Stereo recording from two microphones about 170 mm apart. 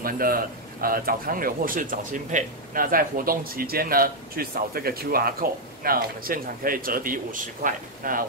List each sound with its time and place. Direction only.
0.0 s a man's voice: 60° right (ahead or behind)